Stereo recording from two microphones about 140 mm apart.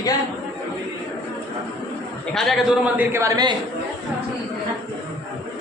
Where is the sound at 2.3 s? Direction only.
Centre (ahead or behind).